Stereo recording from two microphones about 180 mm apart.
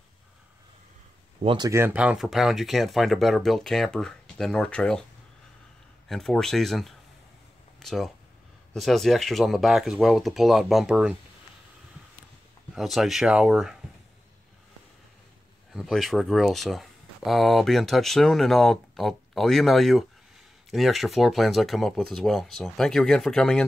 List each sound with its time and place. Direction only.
1.4 s speech: 30° right (ahead or behind)
1.7 s speech: 10° right (ahead or behind)
6.0 s speech: centre (ahead or behind)
12.7 s speech: centre (ahead or behind)
15.7 s speech: centre (ahead or behind)